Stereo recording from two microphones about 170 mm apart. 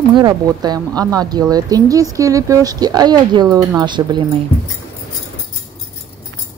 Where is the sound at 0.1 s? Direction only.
20° right (ahead or behind).